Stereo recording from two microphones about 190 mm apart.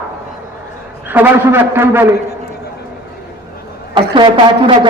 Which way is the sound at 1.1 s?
10° right (ahead or behind).